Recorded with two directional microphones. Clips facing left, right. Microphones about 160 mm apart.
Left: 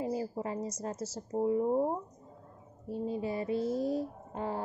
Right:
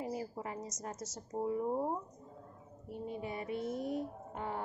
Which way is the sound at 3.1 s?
30° left (ahead or behind).